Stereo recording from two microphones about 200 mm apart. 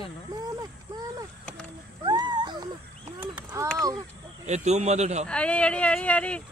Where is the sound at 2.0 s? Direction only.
20° right (ahead or behind).